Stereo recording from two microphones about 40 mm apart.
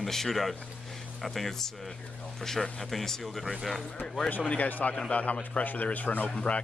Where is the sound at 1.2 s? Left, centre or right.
Centre.